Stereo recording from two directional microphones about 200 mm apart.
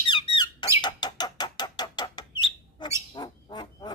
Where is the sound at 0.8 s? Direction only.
20° left (ahead or behind).